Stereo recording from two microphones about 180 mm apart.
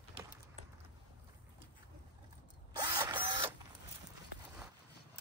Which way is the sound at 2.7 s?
25° right (ahead or behind).